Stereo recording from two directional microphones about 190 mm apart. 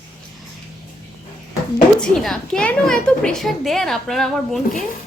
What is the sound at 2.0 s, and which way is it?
A woman's voice, centre (ahead or behind).